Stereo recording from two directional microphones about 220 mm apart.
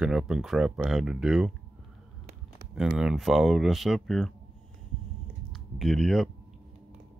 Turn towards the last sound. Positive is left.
turn(degrees=0)  # may be behind; listen again after turning